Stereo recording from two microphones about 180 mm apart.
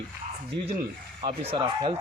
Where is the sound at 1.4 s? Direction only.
25° right (ahead or behind).